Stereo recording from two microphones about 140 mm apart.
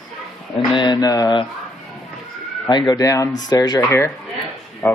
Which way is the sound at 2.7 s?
30° left (ahead or behind).